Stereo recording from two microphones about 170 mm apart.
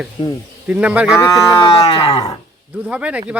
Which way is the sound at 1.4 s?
20° left (ahead or behind).